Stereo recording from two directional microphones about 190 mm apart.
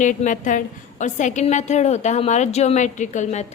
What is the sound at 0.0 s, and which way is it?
Speech, 40° left (ahead or behind).